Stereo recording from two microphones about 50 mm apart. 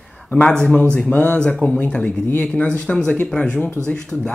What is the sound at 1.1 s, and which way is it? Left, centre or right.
A man's voice, left.